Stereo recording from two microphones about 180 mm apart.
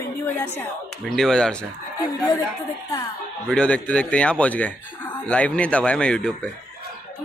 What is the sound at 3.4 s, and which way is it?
A woman's voice, 5° left (ahead or behind).